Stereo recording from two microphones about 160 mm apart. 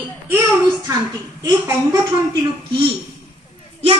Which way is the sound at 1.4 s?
20° right (ahead or behind).